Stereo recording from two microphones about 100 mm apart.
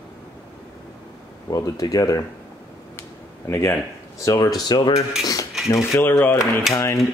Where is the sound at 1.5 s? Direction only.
35° left (ahead or behind).